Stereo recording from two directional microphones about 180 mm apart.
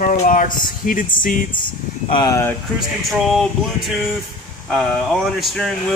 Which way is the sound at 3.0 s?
Centre (ahead or behind).